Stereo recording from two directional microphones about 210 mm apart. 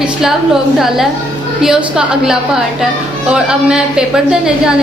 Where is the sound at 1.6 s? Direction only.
5° right (ahead or behind).